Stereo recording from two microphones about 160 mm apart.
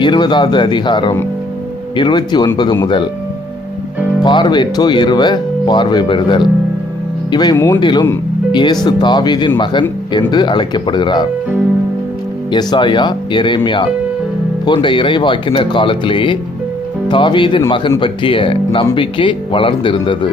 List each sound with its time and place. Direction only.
0.0 s speech: 30° left (ahead or behind)
4.2 s speech: 30° left (ahead or behind)
12.5 s speech: 30° left (ahead or behind)